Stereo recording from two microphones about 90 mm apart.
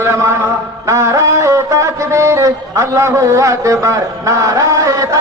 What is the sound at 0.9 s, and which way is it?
Music, 35° right (ahead or behind).